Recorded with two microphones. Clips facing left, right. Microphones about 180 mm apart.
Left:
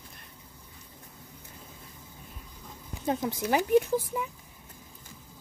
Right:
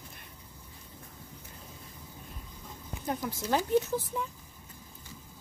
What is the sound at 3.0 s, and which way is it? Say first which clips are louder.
Speech: left 5 dB; 25° left (ahead or behind).